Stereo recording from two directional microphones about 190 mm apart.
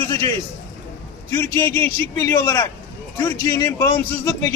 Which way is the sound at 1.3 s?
15° left (ahead or behind).